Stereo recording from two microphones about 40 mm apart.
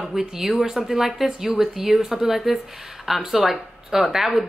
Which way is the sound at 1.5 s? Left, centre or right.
Right.